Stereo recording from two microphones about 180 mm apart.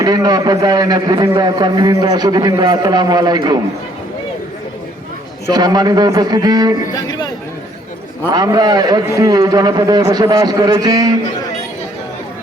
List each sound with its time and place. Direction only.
0.0 s a man's voice: 20° right (ahead or behind)
5.5 s a man's voice: 20° right (ahead or behind)
6.9 s speech: 20° left (ahead or behind)
8.3 s a man's voice: 25° right (ahead or behind)